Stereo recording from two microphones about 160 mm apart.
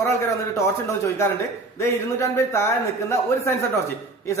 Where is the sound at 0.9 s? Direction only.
15° left (ahead or behind).